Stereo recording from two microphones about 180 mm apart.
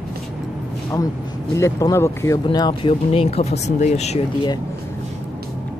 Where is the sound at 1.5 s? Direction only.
15° left (ahead or behind).